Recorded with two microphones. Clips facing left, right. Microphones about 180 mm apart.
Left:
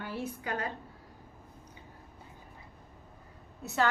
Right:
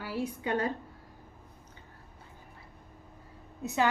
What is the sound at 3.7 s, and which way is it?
Speech, 15° right (ahead or behind).